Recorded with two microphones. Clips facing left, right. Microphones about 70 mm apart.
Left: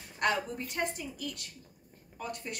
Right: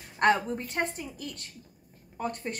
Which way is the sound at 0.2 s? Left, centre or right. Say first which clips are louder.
Right 6 dB; right.